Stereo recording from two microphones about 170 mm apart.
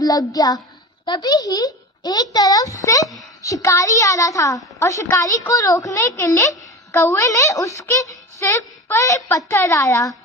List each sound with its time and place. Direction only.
0.0 s a child's voice: 20° left (ahead or behind)